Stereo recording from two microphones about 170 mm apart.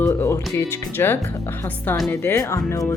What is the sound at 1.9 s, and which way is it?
Speech, centre (ahead or behind).